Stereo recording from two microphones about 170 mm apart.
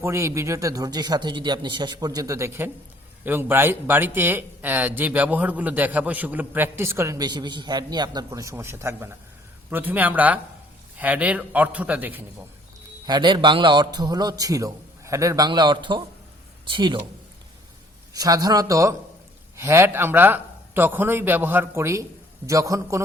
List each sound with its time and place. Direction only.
0.0 s a man's voice: 15° right (ahead or behind)
13.1 s a man's voice: 25° right (ahead or behind)
18.1 s a man's voice: 20° right (ahead or behind)